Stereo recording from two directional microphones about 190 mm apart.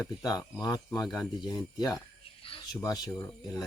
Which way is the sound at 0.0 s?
20° left (ahead or behind).